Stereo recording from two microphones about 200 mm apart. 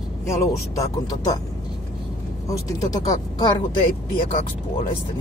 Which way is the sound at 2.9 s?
20° left (ahead or behind).